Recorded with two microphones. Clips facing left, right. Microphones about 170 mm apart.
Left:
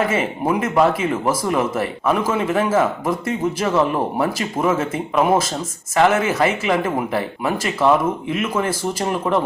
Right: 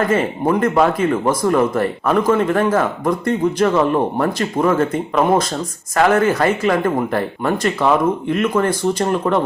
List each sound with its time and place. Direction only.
0.0 s speech: 5° left (ahead or behind)